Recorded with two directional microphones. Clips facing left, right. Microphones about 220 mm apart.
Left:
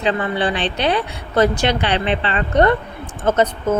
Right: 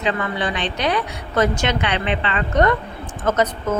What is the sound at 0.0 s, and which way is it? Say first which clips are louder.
A woman's voice: left 3 dB; 30° left (ahead or behind).